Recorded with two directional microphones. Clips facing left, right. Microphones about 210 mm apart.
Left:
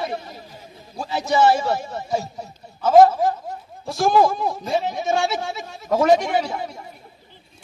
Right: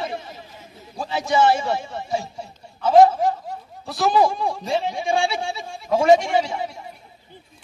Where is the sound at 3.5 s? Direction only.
45° left (ahead or behind).